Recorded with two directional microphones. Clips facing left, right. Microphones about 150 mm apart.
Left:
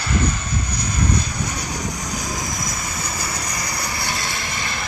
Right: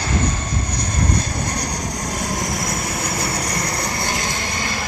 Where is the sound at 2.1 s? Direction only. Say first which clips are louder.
Right 3 dB; 65° right (ahead or behind).